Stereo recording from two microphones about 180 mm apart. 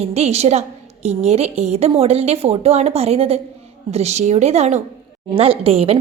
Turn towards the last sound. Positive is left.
turn(degrees=-35)  # may be behind; listen again after turning